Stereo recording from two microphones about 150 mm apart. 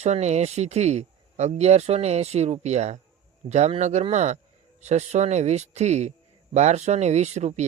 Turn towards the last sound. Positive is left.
turn(degrees=-50)  # may be behind; listen again after turning